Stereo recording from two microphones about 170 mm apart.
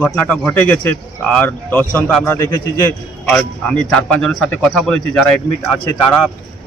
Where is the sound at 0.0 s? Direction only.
10° left (ahead or behind).